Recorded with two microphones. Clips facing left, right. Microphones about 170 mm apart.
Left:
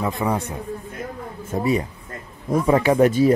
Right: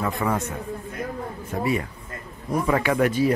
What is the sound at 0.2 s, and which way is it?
Speech, 15° left (ahead or behind).